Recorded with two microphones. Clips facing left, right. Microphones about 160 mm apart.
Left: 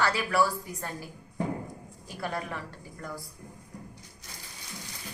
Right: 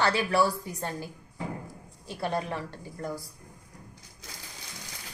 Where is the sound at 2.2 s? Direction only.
25° right (ahead or behind).